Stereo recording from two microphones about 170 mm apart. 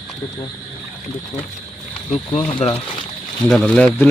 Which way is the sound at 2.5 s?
35° left (ahead or behind).